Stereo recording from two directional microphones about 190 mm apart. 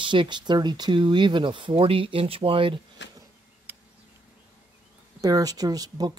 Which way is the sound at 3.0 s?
70° left (ahead or behind).